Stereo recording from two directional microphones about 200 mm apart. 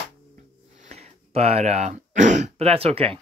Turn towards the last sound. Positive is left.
turn(degrees=-30)  # may be behind; listen again after turning